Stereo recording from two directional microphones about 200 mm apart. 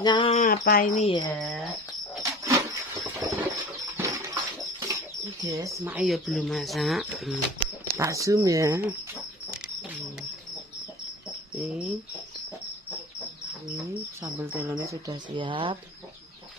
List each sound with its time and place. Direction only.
0.0 s music: 25° left (ahead or behind)
0.4 s a sound: 45° left (ahead or behind)
1.3 s speech: 5° left (ahead or behind)
2.4 s a sound: 15° right (ahead or behind)
6.0 s speech: centre (ahead or behind)
8.0 s speech: 15° right (ahead or behind)
11.5 s speech: centre (ahead or behind)
13.8 s speech: 10° right (ahead or behind)